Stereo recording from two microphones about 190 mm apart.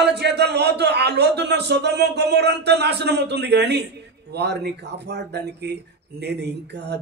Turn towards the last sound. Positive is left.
turn(degrees=-60)  # may be behind; listen again after turning